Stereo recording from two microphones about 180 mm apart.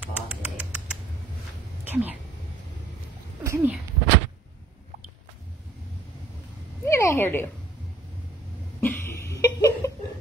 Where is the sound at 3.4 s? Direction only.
15° right (ahead or behind).